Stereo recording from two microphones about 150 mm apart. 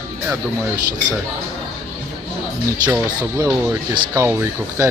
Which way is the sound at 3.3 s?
20° right (ahead or behind).